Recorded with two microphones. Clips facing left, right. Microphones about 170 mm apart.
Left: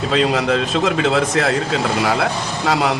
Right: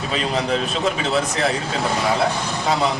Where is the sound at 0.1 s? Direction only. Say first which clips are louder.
Left 5 dB; 90° left.